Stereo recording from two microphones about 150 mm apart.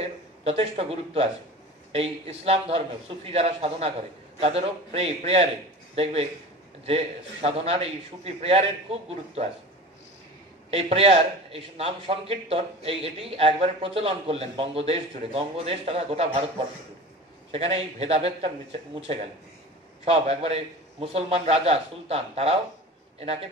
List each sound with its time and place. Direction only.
0.0 s a man's voice: 45° right (ahead or behind)
6.9 s a man's voice: 40° right (ahead or behind)
10.7 s a man's voice: 45° right (ahead or behind)
17.5 s a man's voice: 40° right (ahead or behind)